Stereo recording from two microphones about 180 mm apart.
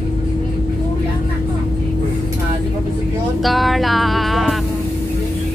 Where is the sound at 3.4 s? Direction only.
Centre (ahead or behind).